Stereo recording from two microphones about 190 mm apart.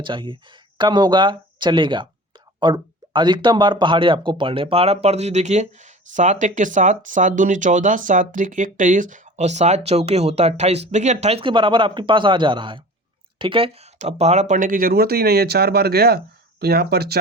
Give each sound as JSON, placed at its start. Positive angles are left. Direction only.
{"t": 0.0, "sound": "speech", "side_deg": -25}